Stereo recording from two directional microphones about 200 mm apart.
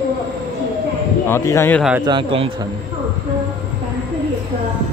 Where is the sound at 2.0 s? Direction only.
25° right (ahead or behind).